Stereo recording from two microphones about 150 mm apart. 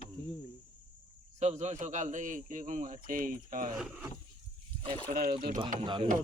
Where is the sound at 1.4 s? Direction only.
50° right (ahead or behind).